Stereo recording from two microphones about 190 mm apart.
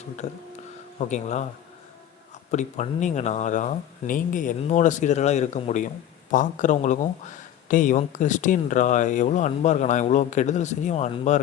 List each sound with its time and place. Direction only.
0.9 s speech: 40° left (ahead or behind)
2.5 s speech: 40° left (ahead or behind)